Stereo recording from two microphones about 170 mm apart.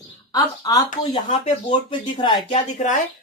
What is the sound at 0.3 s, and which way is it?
Speech, 20° left (ahead or behind).